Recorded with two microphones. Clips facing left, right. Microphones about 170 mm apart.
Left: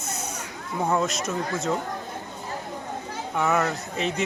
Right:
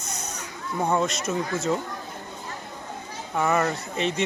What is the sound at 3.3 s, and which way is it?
Speech, centre (ahead or behind).